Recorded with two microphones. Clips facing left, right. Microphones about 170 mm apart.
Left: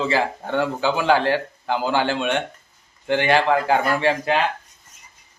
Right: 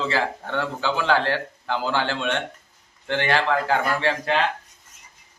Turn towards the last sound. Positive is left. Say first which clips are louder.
# left 3 dB
turn(degrees=10)  # may be behind; listen again after turning